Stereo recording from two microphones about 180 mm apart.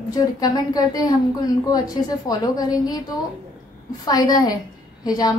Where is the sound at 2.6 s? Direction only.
20° left (ahead or behind).